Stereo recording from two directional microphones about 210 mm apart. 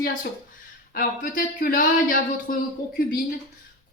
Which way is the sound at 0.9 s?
40° left (ahead or behind).